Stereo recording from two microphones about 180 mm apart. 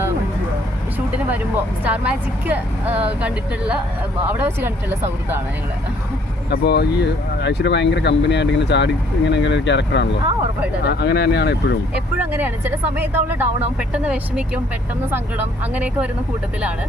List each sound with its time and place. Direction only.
0.9 s vehicle: 10° right (ahead or behind)
1.8 s speech: 10° right (ahead or behind)
6.5 s speech: 65° left (ahead or behind)
10.8 s speech: 70° left (ahead or behind)
12.1 s speech: 10° right (ahead or behind)